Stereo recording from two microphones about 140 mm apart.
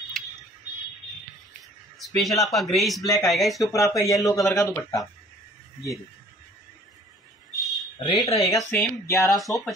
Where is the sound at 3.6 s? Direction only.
25° left (ahead or behind).